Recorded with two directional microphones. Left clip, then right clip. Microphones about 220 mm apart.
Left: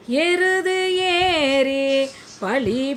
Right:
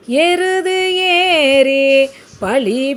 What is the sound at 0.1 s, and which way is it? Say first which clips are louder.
Music: right 5 dB; 20° right (ahead or behind).